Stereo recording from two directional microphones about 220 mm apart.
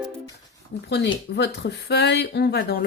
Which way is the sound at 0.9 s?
50° left (ahead or behind).